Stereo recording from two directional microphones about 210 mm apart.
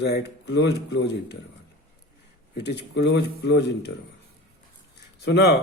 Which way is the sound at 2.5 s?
55° left (ahead or behind).